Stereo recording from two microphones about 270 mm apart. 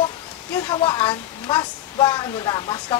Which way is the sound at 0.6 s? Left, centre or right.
Centre.